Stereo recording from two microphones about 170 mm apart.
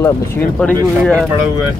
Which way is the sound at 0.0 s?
10° left (ahead or behind).